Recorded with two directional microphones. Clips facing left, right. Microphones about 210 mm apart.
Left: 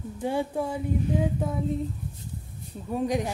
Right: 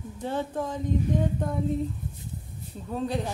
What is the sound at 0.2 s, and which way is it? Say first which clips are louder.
Speech: left 2 dB; 10° left (ahead or behind).